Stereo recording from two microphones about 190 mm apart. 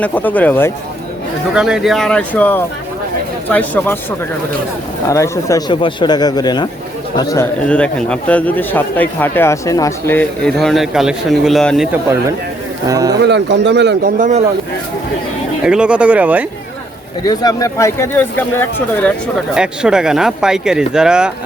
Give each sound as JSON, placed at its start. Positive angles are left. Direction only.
{"t": 0.0, "sound": "a man's voice", "side_deg": 10}
{"t": 1.5, "sound": "a man's voice", "side_deg": -5}
{"t": 5.0, "sound": "a man's voice", "side_deg": 15}
{"t": 7.7, "sound": "a man's voice", "side_deg": 5}
{"t": 12.9, "sound": "speech", "side_deg": -20}
{"t": 13.2, "sound": "a man's voice", "side_deg": -65}
{"t": 14.0, "sound": "speech", "side_deg": -40}
{"t": 15.6, "sound": "speech", "side_deg": -5}
{"t": 17.2, "sound": "a man's voice", "side_deg": 20}
{"t": 19.5, "sound": "speech", "side_deg": -5}